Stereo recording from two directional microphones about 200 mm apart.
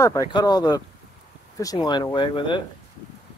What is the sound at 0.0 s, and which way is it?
Speech, 15° left (ahead or behind).